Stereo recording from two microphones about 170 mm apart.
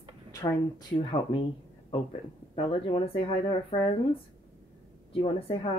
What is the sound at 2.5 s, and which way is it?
Speech, 30° left (ahead or behind).